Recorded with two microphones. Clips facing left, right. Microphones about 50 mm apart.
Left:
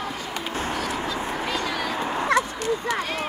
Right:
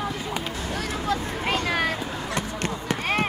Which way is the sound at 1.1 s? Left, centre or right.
Right.